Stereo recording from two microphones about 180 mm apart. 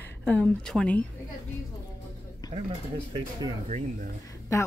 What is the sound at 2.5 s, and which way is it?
Speech, 35° right (ahead or behind).